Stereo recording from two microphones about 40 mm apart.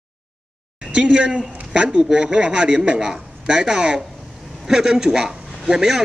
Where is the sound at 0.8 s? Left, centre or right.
Right.